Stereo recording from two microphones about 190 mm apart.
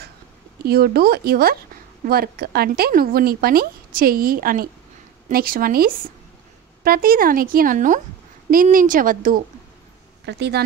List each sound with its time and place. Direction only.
0.7 s a woman's voice: 55° right (ahead or behind)
10.2 s speech: 65° right (ahead or behind)